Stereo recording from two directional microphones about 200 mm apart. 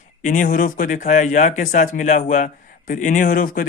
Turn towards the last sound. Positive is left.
turn(degrees=45)  # may be behind; listen again after turning